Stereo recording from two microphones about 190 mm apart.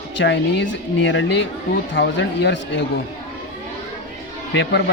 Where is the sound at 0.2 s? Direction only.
75° left (ahead or behind).